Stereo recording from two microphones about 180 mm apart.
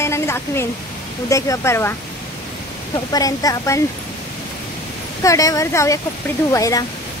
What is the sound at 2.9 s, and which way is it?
Speech, 20° left (ahead or behind).